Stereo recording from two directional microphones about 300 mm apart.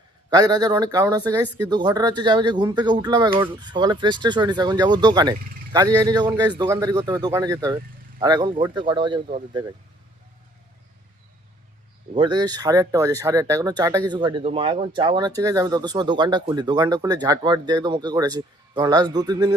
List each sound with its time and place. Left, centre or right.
0.3 s speech: centre
12.1 s speech: centre